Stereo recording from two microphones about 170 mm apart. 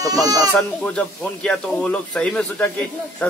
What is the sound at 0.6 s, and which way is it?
Speech, 5° left (ahead or behind).